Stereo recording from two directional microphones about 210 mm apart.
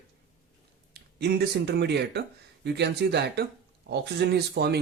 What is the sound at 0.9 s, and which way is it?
Speech, 50° right (ahead or behind).